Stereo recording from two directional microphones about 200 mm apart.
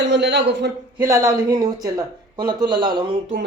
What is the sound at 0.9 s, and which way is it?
Speech, 15° right (ahead or behind).